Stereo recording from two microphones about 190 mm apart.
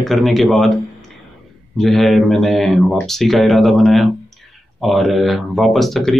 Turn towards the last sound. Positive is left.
turn(degrees=0)  # may be behind; listen again after turning